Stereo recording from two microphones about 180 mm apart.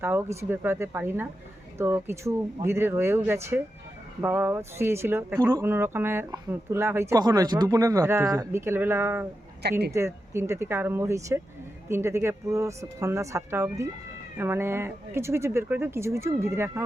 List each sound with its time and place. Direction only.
0.0 s speech: 10° right (ahead or behind)